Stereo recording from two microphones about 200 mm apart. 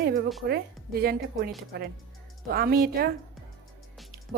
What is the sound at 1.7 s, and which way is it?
A woman's voice, 50° right (ahead or behind).